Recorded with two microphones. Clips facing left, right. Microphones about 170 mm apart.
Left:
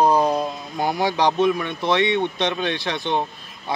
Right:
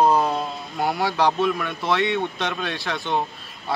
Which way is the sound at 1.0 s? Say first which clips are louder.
Left 3 dB; 20° left (ahead or behind).